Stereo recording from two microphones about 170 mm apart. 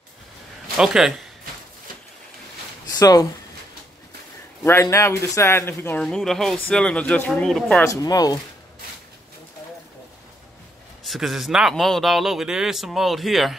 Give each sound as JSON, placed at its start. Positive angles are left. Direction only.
{"t": 0.7, "sound": "speech", "side_deg": -5}
{"t": 3.0, "sound": "speech", "side_deg": 20}
{"t": 4.6, "sound": "speech", "side_deg": 15}
{"t": 7.8, "sound": "speech", "side_deg": 20}
{"t": 11.1, "sound": "speech", "side_deg": 0}